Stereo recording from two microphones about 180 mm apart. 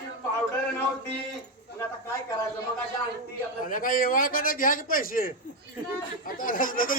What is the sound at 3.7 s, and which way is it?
A man's voice, 50° left (ahead or behind).